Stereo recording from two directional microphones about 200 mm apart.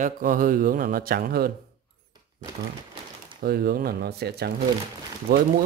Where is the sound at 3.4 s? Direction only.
50° right (ahead or behind).